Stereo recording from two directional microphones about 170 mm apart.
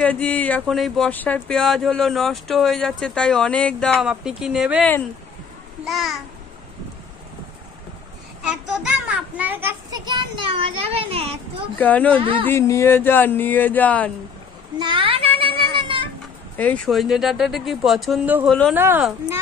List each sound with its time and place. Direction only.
0.0 s speech: 10° left (ahead or behind)
5.9 s speech: centre (ahead or behind)
8.5 s a sound: 5° right (ahead or behind); by 11.2 s 35° right (ahead or behind)
11.8 s speech: 10° left (ahead or behind)
12.2 s speech: 30° right (ahead or behind)
12.4 s speech: 15° left (ahead or behind)
14.8 s child singing: 30° right (ahead or behind)
16.5 s speech: 10° left (ahead or behind); by 18.5 s 10° right (ahead or behind)
18.5 s speech: 5° left (ahead or behind)
18.8 s speech: 10° right (ahead or behind)